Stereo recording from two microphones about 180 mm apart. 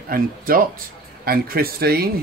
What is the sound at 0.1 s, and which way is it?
Speech, 55° right (ahead or behind).